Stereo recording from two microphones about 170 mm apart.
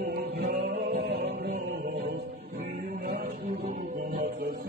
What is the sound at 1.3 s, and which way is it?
Music, 70° right (ahead or behind).